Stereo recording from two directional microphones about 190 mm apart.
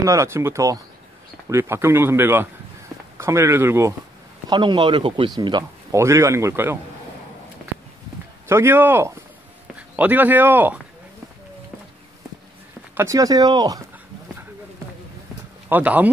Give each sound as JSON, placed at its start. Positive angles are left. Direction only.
{"t": 0.0, "sound": "speech", "side_deg": -15}
{"t": 4.5, "sound": "speech", "side_deg": -25}
{"t": 8.5, "sound": "speech", "side_deg": -10}
{"t": 12.9, "sound": "speech", "side_deg": -15}
{"t": 15.7, "sound": "speech", "side_deg": -10}